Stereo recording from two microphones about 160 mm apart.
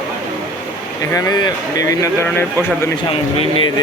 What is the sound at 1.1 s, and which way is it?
Speech, 25° left (ahead or behind).